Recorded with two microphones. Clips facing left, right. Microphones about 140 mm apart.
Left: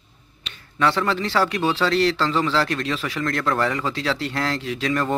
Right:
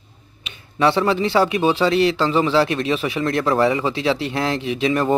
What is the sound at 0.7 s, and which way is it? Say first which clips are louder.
A man's voice: right 4 dB; 20° right (ahead or behind).